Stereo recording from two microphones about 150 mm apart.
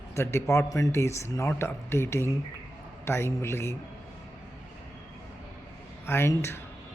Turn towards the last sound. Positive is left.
turn(degrees=15)  # may be behind; listen again after turning